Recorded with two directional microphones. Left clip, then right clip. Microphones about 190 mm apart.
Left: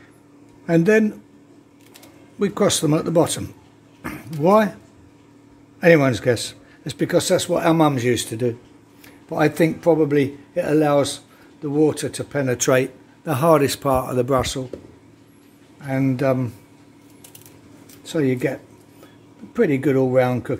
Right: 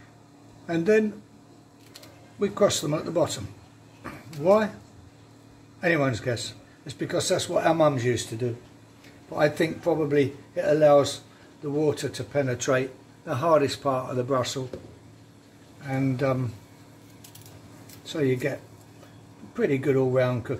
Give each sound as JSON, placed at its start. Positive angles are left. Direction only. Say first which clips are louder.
{"t": 0.7, "sound": "speech", "louder": "left 6 dB", "side_deg": 60}
{"t": 2.3, "sound": "speech", "louder": "left 3 dB", "side_deg": 55}
{"t": 4.0, "sound": "a sound", "louder": "left 6 dB", "side_deg": 60}
{"t": 5.8, "sound": "a man's voice", "louder": "left 9 dB", "side_deg": 60}
{"t": 15.9, "sound": "speech", "louder": "left 6 dB", "side_deg": 55}
{"t": 18.0, "sound": "speech", "louder": "left 5 dB", "side_deg": 50}
{"t": 19.5, "sound": "a man's voice", "louder": "left 5 dB", "side_deg": 50}